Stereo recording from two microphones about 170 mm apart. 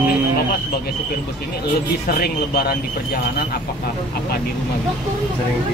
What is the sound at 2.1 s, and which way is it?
Speech, 65° left (ahead or behind).